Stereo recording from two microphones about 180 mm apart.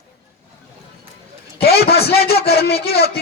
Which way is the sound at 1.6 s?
60° left (ahead or behind).